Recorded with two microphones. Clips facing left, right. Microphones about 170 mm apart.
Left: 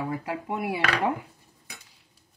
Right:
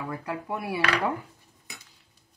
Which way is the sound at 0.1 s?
20° left (ahead or behind).